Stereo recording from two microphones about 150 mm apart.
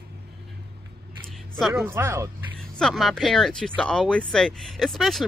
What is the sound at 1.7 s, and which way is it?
Speech, 15° right (ahead or behind).